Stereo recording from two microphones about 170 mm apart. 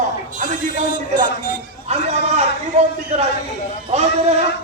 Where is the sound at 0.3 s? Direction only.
45° right (ahead or behind).